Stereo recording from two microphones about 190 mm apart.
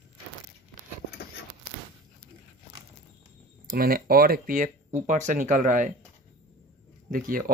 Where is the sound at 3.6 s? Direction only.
50° right (ahead or behind).